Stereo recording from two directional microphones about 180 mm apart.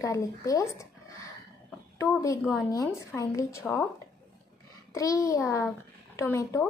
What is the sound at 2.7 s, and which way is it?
A woman's voice, 15° left (ahead or behind).